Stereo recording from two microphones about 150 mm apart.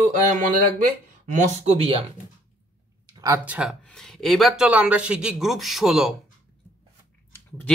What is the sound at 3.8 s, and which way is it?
A man's voice, 5° left (ahead or behind).